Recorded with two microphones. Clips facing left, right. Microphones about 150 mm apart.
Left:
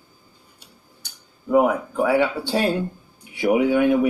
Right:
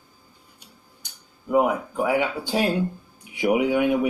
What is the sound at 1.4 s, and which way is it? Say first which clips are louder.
Speech: left 3 dB; 15° right (ahead or behind).